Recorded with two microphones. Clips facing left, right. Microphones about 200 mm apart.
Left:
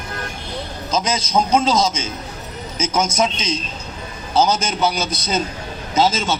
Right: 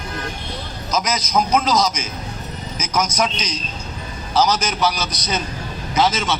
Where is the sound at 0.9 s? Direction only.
30° left (ahead or behind).